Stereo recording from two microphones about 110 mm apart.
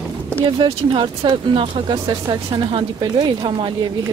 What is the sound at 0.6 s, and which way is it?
Speech, 50° right (ahead or behind).